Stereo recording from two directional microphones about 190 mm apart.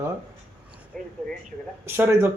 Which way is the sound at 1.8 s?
10° right (ahead or behind).